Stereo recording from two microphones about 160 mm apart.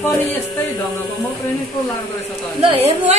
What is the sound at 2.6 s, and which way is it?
Speech, 35° right (ahead or behind).